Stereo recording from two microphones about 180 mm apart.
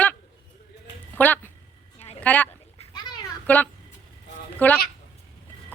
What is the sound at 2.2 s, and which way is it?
Speech, 10° left (ahead or behind).